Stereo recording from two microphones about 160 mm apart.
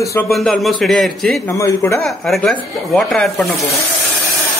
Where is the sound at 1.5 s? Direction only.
15° left (ahead or behind).